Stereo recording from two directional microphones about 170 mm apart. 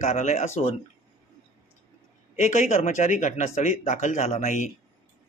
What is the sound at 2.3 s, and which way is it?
Speech, 45° left (ahead or behind).